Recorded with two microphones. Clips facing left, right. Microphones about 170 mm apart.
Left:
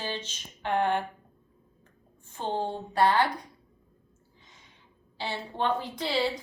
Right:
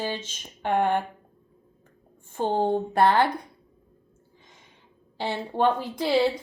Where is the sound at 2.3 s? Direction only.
50° right (ahead or behind).